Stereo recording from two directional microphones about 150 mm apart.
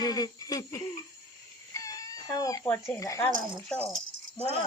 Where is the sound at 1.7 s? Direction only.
20° left (ahead or behind).